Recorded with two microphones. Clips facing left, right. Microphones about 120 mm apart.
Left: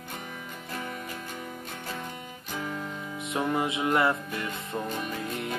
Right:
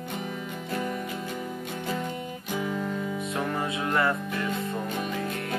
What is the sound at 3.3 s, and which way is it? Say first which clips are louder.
Music: left 4 dB; 15° left (ahead or behind).